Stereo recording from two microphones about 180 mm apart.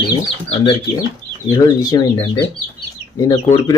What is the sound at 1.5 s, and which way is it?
Speech, 20° left (ahead or behind).